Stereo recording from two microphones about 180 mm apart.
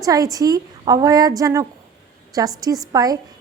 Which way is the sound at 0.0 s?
20° right (ahead or behind).